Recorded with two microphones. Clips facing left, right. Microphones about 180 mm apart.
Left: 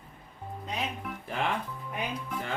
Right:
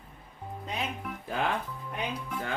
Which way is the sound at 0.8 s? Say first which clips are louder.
Even; centre (ahead or behind).